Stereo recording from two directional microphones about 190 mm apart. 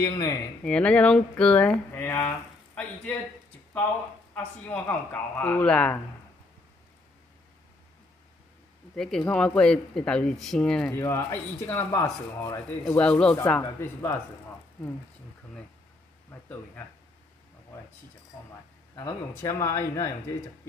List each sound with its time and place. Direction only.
0.7 s speech: 5° left (ahead or behind)
4.6 s speech: 10° left (ahead or behind)
8.9 s speech: 5° left (ahead or behind)
16.3 s speech: 10° left (ahead or behind)
18.9 s speech: 15° left (ahead or behind)